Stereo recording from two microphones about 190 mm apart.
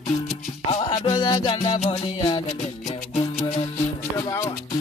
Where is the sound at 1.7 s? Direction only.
35° left (ahead or behind).